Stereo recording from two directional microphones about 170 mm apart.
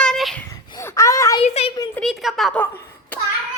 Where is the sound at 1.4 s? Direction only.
40° left (ahead or behind).